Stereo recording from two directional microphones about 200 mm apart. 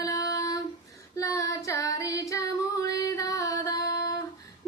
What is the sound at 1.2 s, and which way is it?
Child singing, 15° left (ahead or behind).